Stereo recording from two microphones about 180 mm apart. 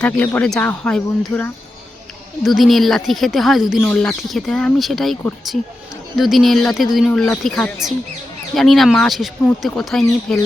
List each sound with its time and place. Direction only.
0.0 s speech: 10° left (ahead or behind)